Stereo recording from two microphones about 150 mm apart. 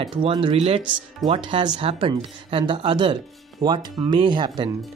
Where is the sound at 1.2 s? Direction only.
35° right (ahead or behind).